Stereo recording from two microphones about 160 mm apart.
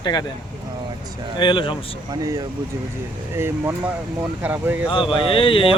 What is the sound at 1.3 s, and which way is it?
Speech, 30° left (ahead or behind).